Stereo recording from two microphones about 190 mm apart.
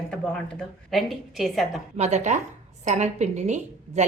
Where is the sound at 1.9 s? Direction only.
35° right (ahead or behind).